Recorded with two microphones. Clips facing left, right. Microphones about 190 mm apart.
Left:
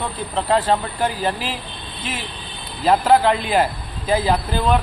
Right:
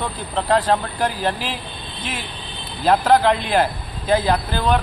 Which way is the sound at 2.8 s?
5° left (ahead or behind).